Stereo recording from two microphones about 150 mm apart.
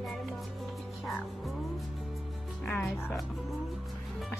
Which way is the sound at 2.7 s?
Centre (ahead or behind).